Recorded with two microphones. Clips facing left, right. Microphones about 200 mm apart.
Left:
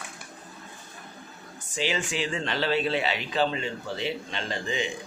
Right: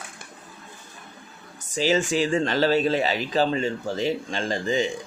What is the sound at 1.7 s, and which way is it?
Speech, 40° right (ahead or behind).